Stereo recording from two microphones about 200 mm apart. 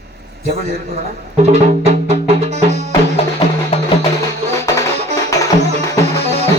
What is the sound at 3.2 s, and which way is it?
Music, 30° left (ahead or behind).